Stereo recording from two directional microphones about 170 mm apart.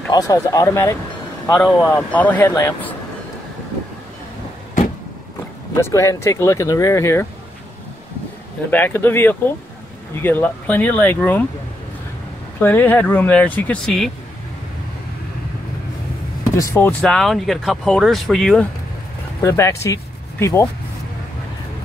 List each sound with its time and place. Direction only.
0.1 s speech: 20° left (ahead or behind)
1.5 s speech: 5° left (ahead or behind)
1.8 s speech: 15° left (ahead or behind)
5.8 s speech: 15° left (ahead or behind)
8.6 s speech: 10° left (ahead or behind)
12.5 s speech: 10° left (ahead or behind)
16.5 s speech: 15° left (ahead or behind)
17.0 s speech: 5° left (ahead or behind)
19.4 s speech: 15° left (ahead or behind)